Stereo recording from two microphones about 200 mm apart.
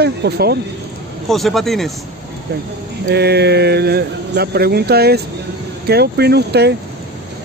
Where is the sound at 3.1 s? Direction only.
55° right (ahead or behind).